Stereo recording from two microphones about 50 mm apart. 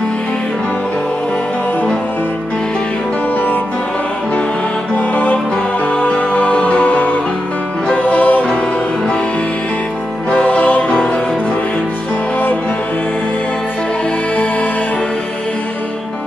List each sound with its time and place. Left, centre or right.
4.9 s music: left
10.3 s music: left